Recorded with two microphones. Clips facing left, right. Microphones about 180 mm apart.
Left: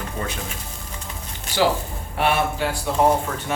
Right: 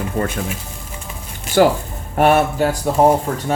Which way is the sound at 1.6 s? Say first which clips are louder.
Right 7 dB; 50° right (ahead or behind).